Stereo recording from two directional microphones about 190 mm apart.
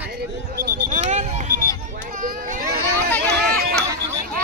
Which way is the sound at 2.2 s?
45° right (ahead or behind).